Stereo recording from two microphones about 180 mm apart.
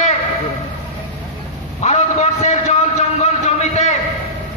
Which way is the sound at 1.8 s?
40° left (ahead or behind).